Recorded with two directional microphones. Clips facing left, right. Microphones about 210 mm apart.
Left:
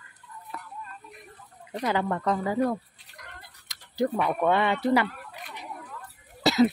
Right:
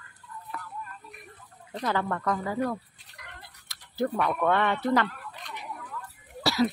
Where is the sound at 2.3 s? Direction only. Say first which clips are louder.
Left 4 dB; 25° left (ahead or behind).